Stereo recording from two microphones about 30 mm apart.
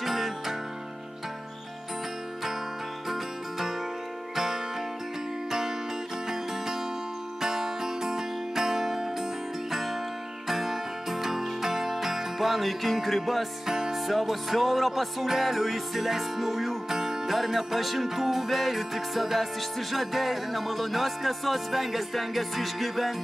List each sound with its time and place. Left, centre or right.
0.0 s music: centre
3.1 s music: centre
7.4 s music: centre
13.7 s music: centre
13.9 s music: centre